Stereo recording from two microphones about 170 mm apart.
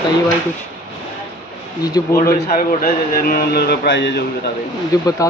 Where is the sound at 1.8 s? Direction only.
20° left (ahead or behind).